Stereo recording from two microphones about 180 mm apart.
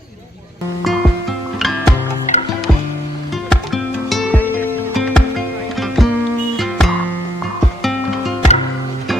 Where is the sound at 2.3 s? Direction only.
40° left (ahead or behind).